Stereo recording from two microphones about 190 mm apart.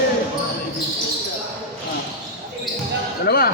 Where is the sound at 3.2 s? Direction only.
55° left (ahead or behind).